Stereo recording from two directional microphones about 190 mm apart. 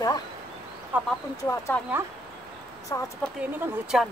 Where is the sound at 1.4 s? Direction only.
15° left (ahead or behind).